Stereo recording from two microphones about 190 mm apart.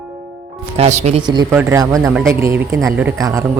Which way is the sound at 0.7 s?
35° right (ahead or behind).